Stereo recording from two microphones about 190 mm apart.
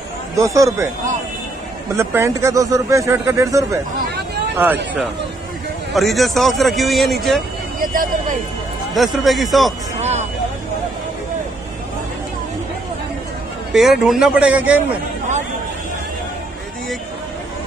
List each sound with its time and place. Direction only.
0.4 s speech: 15° right (ahead or behind)
2.0 s speech: 15° right (ahead or behind)
5.9 s a man's voice: centre (ahead or behind)
7.8 s speech: 45° right (ahead or behind)
8.9 s a man's voice: centre (ahead or behind)
9.9 s vehicle: 35° right (ahead or behind)
13.7 s a man's voice: centre (ahead or behind)